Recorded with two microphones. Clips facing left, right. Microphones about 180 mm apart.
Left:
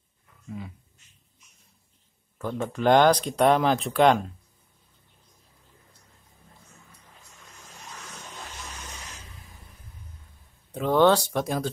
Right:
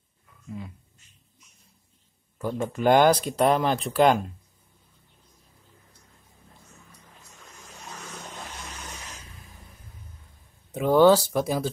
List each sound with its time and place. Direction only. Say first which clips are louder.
0.5 s speech: even; centre (ahead or behind)
2.3 s speech: right 1 dB; 5° right (ahead or behind)
10.7 s speech: right 3 dB; 5° right (ahead or behind)